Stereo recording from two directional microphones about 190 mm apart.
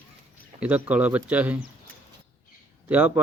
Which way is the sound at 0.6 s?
5° right (ahead or behind).